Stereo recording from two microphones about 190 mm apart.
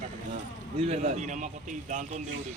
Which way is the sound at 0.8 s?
35° right (ahead or behind).